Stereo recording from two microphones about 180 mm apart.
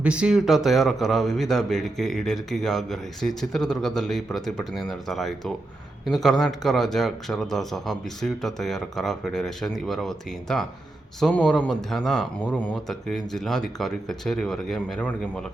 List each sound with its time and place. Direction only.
0.0 s a man's voice: 5° right (ahead or behind)